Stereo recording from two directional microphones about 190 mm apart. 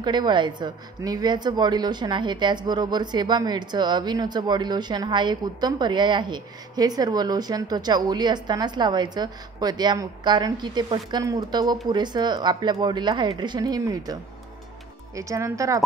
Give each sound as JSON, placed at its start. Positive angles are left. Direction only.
{"t": 0.0, "sound": "speech", "side_deg": -25}
{"t": 15.1, "sound": "speech", "side_deg": -15}